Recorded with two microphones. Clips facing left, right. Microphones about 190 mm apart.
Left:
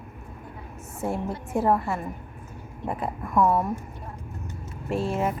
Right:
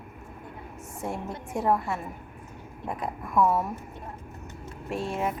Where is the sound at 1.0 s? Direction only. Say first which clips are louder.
Left 5 dB; centre (ahead or behind).